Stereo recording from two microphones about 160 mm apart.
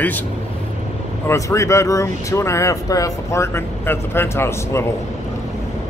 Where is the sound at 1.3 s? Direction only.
20° left (ahead or behind).